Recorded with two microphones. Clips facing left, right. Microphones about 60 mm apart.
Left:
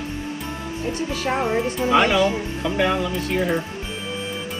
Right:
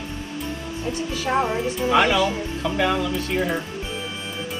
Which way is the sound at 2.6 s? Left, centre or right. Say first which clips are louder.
Left 1 dB; centre.